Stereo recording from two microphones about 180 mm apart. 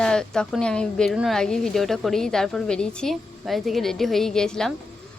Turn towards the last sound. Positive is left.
turn(degrees=5)  # may be behind; listen again after turning